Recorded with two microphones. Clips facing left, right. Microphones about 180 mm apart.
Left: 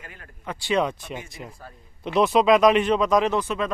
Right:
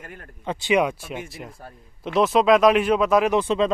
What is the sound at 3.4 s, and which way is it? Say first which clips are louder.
Speech: right 5 dB; 25° right (ahead or behind).